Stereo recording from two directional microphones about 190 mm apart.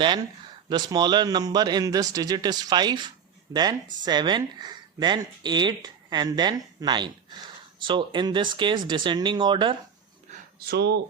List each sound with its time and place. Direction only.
0.7 s speech: 20° right (ahead or behind)
10.7 s speech: 60° right (ahead or behind)